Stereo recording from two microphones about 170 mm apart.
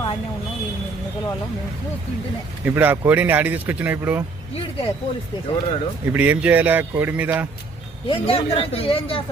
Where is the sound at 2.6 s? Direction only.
10° right (ahead or behind).